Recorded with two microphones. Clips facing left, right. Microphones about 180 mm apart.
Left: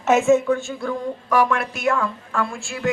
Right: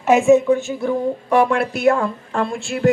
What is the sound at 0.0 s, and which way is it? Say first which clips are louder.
A woman's voice: right 3 dB; 15° right (ahead or behind).